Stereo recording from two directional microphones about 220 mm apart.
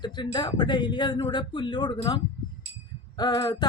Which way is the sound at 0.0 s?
20° left (ahead or behind).